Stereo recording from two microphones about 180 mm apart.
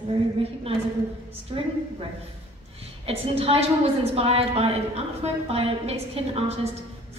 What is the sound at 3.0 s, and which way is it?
A woman's voice, 35° right (ahead or behind).